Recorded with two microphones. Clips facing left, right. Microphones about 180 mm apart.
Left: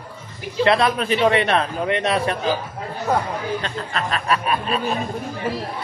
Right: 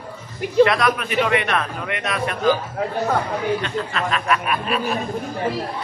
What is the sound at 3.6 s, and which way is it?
A man's voice, 40° left (ahead or behind).